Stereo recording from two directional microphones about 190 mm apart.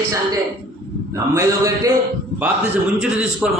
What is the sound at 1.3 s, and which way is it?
Speech, 15° right (ahead or behind).